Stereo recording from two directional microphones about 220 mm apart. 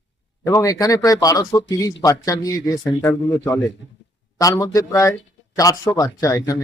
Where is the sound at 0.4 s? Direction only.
15° left (ahead or behind).